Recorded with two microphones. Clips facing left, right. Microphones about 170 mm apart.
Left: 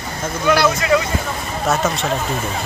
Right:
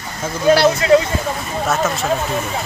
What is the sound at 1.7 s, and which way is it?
Speech, centre (ahead or behind).